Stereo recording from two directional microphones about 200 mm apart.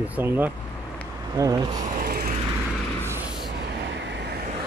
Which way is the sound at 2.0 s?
50° right (ahead or behind).